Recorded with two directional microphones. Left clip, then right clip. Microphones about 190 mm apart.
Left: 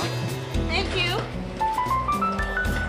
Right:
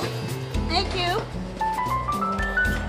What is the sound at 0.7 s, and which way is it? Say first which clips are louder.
Music: right 1 dB; 40° right (ahead or behind).